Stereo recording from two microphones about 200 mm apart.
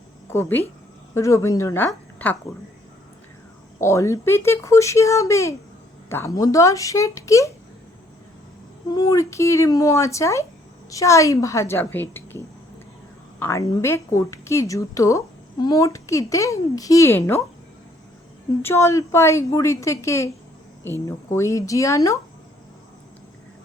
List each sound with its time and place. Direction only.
0.3 s speech: 10° left (ahead or behind)
3.8 s speech: 15° left (ahead or behind)
8.9 s speech: 20° left (ahead or behind)
13.4 s speech: 15° left (ahead or behind)
18.6 s speech: 15° left (ahead or behind)